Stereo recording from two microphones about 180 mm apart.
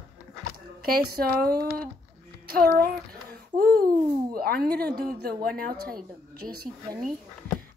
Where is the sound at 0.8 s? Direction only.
55° right (ahead or behind).